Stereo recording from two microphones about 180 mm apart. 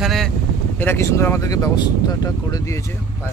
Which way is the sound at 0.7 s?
10° left (ahead or behind).